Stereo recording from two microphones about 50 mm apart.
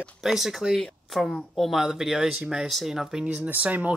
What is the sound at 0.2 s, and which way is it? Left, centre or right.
Speech, centre.